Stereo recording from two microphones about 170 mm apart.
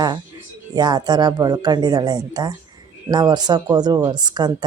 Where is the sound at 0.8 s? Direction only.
25° right (ahead or behind).